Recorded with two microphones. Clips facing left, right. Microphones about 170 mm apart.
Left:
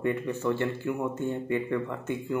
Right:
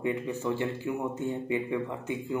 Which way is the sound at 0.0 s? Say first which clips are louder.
Left 2 dB; 15° right (ahead or behind).